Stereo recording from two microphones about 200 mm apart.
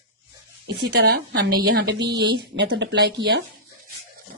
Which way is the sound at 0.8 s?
55° right (ahead or behind).